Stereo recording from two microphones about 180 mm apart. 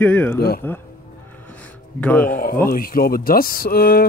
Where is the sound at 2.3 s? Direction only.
55° left (ahead or behind).